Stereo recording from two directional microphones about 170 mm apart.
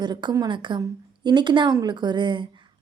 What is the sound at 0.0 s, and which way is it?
A woman's voice, 25° right (ahead or behind).